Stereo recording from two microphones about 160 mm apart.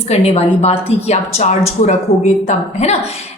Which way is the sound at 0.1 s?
40° left (ahead or behind).